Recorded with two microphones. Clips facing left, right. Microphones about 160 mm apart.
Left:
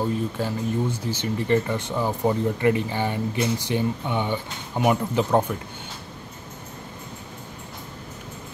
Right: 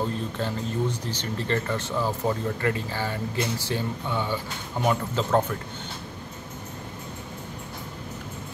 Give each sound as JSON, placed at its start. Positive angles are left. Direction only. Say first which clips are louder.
{"t": 0.4, "sound": "speech", "louder": "left 2 dB", "side_deg": 10}